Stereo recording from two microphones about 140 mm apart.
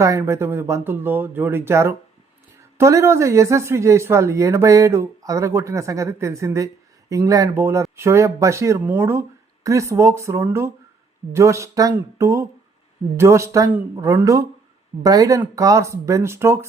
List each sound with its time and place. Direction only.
0.0 s speech: 20° right (ahead or behind)